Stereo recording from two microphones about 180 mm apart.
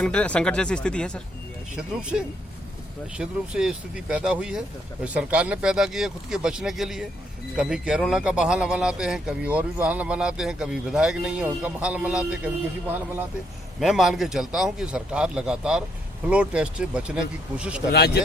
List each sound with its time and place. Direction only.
0.0 s a man's voice: 5° left (ahead or behind)
1.7 s a man's voice: 5° right (ahead or behind)
13.7 s a man's voice: centre (ahead or behind)
17.9 s a man's voice: 65° left (ahead or behind)